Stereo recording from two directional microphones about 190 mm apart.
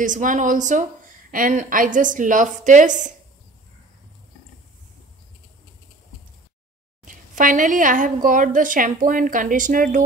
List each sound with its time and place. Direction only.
0.0 s a woman's voice: 45° right (ahead or behind)
7.1 s a woman's voice: 45° right (ahead or behind)